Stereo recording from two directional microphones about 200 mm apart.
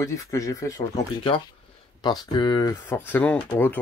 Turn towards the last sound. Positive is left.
turn(degrees=5)  # may be behind; listen again after turning